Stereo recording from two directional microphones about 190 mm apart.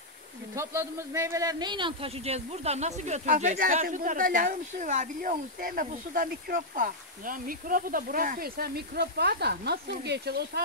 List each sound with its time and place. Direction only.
0.6 s a man's voice: 15° right (ahead or behind); by 10.6 s 60° right (ahead or behind)